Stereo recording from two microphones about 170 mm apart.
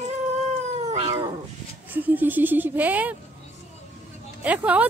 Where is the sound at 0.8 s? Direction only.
35° right (ahead or behind).